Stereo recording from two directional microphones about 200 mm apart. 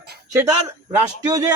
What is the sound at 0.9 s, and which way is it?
Speech, 15° right (ahead or behind).